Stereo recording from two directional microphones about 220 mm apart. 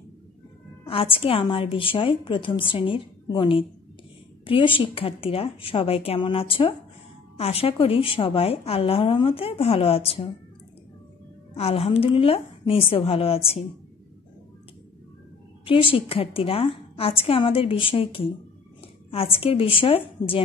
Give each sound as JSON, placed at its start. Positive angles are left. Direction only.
{"t": 0.8, "sound": "a woman's voice", "side_deg": 25}
{"t": 11.5, "sound": "a woman's voice", "side_deg": 25}
{"t": 15.6, "sound": "a woman's voice", "side_deg": 25}